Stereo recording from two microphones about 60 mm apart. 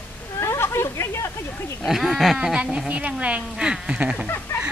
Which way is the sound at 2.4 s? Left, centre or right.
Centre.